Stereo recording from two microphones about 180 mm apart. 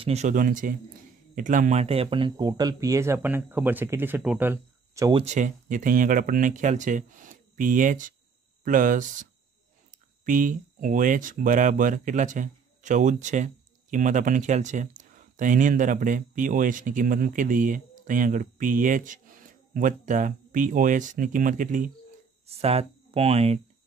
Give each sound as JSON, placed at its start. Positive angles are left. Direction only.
{"t": 0.0, "sound": "speech", "side_deg": -40}
{"t": 5.1, "sound": "speech", "side_deg": -40}
{"t": 22.6, "sound": "speech", "side_deg": -35}